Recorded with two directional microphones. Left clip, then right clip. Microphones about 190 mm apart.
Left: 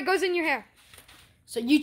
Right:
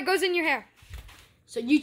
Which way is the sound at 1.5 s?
55° left (ahead or behind).